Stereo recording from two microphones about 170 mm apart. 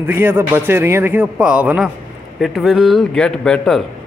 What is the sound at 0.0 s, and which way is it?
A man's voice, 10° right (ahead or behind).